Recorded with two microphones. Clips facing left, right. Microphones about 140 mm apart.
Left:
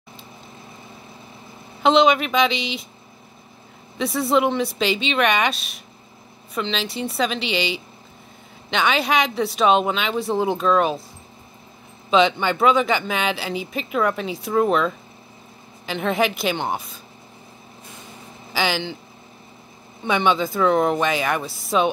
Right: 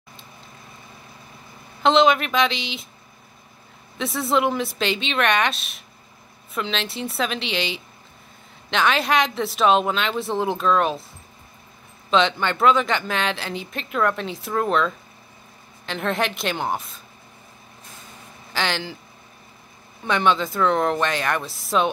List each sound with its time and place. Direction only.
1.8 s speech: centre (ahead or behind)
4.0 s speech: centre (ahead or behind)
12.1 s speech: 5° left (ahead or behind)
18.5 s speech: 5° left (ahead or behind)
20.0 s speech: centre (ahead or behind)